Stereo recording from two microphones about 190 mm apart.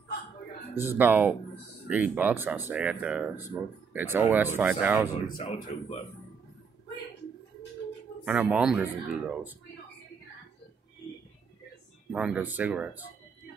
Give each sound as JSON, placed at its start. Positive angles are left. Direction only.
{"t": 0.7, "sound": "speech", "side_deg": -10}
{"t": 5.2, "sound": "speech", "side_deg": 50}
{"t": 5.5, "sound": "speech", "side_deg": 35}
{"t": 8.3, "sound": "speech", "side_deg": -5}
{"t": 12.1, "sound": "speech", "side_deg": -5}